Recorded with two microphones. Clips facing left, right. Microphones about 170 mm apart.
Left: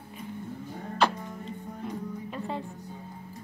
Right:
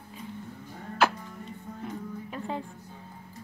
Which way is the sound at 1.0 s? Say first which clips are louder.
Even; 5° right (ahead or behind).